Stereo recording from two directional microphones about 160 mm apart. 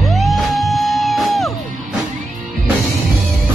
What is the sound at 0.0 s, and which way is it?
Music, centre (ahead or behind).